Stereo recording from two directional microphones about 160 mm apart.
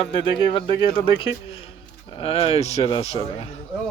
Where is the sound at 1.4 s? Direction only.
35° left (ahead or behind).